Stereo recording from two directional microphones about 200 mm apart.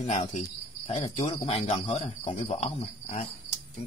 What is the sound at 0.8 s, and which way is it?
Cricket, 25° left (ahead or behind).